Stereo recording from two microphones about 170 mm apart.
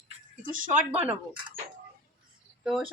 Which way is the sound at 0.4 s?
50° right (ahead or behind).